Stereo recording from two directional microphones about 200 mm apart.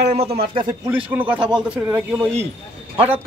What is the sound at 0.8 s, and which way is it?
Speech, 5° right (ahead or behind).